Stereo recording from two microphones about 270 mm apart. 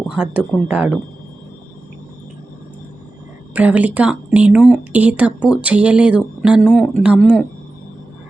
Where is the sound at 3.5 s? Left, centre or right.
Centre.